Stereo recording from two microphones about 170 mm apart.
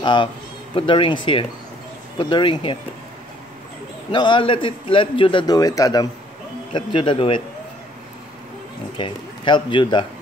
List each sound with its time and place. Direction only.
0.0 s a man's voice: 30° left (ahead or behind)
4.1 s a man's voice: 30° left (ahead or behind)
8.9 s speech: 30° left (ahead or behind)